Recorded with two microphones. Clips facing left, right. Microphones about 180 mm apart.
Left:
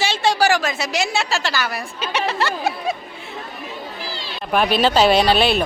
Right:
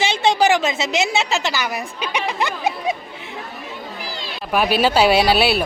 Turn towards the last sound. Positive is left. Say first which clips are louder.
# even
turn(degrees=-10)  # may be behind; listen again after turning